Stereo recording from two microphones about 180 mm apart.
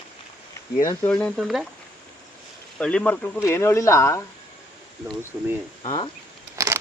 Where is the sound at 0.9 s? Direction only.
10° left (ahead or behind).